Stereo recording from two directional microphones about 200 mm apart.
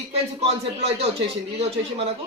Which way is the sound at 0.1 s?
30° right (ahead or behind).